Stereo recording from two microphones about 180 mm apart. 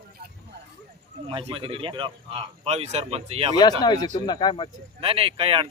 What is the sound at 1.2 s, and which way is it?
Speech, 30° right (ahead or behind).